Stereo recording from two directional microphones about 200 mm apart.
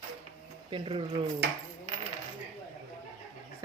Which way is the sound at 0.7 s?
25° right (ahead or behind).